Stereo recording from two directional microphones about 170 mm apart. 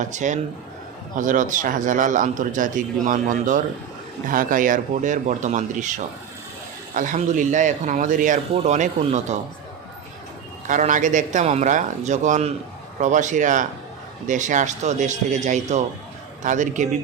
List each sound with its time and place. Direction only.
0.0 s a man's voice: 45° right (ahead or behind)
10.7 s a man's voice: 50° right (ahead or behind)